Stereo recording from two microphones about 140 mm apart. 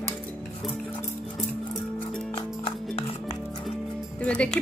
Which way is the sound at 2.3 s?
40° left (ahead or behind).